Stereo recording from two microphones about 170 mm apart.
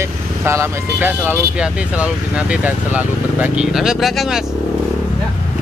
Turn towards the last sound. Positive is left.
turn(degrees=0)  # may be behind; listen again after turning